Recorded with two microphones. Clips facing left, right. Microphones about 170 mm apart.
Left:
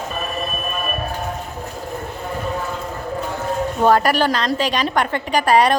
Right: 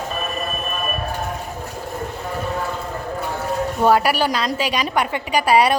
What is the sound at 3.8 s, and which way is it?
A woman's voice, 10° right (ahead or behind).